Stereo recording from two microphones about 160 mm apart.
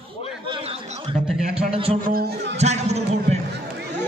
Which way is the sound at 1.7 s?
35° right (ahead or behind).